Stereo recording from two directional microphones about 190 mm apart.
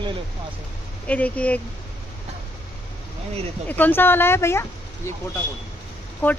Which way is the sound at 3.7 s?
10° left (ahead or behind).